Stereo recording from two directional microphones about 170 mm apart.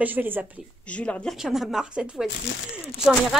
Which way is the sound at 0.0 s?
10° right (ahead or behind).